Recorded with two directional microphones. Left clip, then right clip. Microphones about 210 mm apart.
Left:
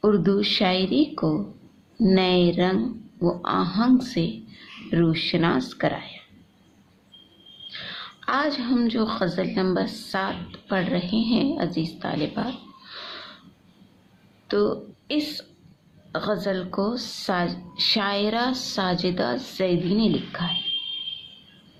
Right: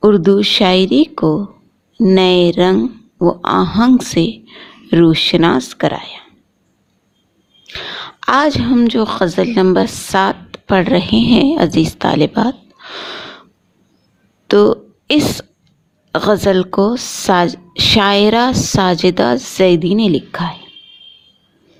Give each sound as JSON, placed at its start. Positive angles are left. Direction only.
{"t": 0.0, "sound": "a woman's voice", "side_deg": -50}
{"t": 7.7, "sound": "a woman's voice", "side_deg": -50}
{"t": 12.9, "sound": "gasp", "side_deg": -45}
{"t": 14.4, "sound": "a woman's voice", "side_deg": -50}